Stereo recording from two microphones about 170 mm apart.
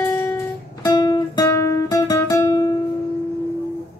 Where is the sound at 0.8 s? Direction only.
25° left (ahead or behind).